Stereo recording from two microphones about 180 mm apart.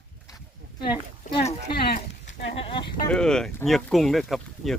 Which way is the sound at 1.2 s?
45° left (ahead or behind).